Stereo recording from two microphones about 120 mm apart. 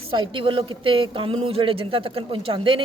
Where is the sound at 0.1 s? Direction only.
45° right (ahead or behind).